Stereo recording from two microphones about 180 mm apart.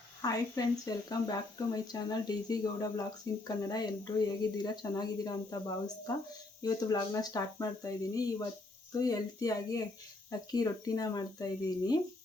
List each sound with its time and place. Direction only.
0.2 s speech: 20° left (ahead or behind)